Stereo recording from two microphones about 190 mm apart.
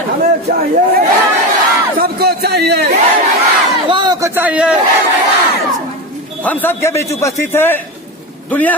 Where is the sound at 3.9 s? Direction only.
25° right (ahead or behind); by 4.8 s 5° right (ahead or behind).